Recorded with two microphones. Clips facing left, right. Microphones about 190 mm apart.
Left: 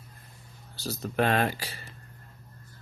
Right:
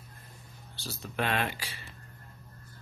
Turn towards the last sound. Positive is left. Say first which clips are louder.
# left 5 dB
turn(degrees=40)  # may be behind; listen again after turning